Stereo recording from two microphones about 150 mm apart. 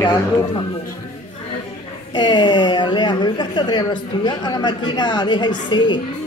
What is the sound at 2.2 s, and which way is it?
A woman's voice, 30° left (ahead or behind).